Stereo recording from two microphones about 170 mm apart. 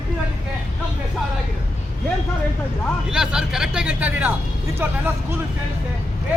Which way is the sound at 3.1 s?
5° right (ahead or behind).